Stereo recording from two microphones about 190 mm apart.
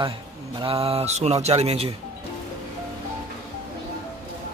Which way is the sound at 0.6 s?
30° right (ahead or behind).